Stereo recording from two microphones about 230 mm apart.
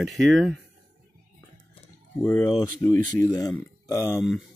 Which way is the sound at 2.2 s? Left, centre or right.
Centre.